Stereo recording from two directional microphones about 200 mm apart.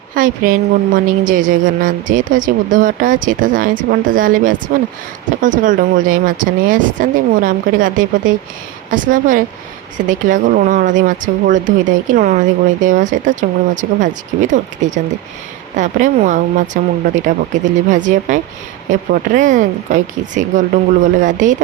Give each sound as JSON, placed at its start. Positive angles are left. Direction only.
{"t": 0.1, "sound": "a woman's voice", "side_deg": -40}